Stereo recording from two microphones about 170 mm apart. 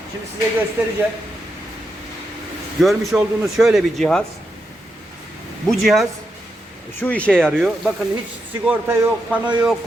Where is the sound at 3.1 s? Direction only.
Centre (ahead or behind).